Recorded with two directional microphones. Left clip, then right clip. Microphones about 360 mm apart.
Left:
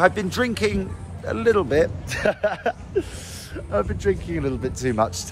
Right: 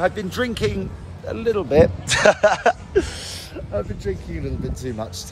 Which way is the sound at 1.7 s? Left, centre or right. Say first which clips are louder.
Right 5 dB; centre.